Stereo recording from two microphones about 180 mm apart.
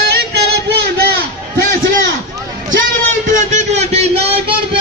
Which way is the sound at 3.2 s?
40° right (ahead or behind).